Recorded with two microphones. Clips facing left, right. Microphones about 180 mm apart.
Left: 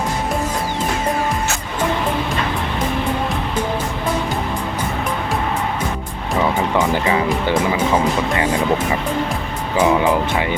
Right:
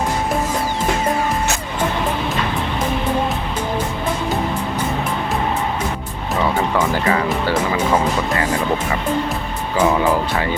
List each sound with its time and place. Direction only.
6.7 s speech: 20° left (ahead or behind)
9.7 s speech: 10° left (ahead or behind)